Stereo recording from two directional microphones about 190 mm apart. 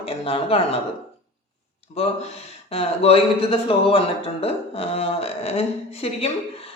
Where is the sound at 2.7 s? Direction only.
30° left (ahead or behind).